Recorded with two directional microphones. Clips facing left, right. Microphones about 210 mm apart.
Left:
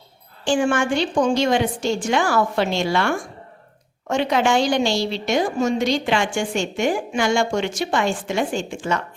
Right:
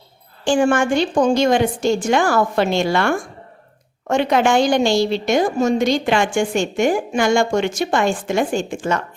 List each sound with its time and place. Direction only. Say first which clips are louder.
0.4 s a woman's voice: right 3 dB; 45° right (ahead or behind)